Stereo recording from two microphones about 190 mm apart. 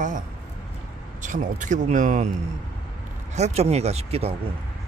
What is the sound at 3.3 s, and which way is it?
Speech, 35° right (ahead or behind).